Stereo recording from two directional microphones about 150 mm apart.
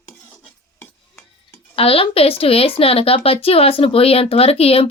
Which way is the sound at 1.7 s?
40° left (ahead or behind).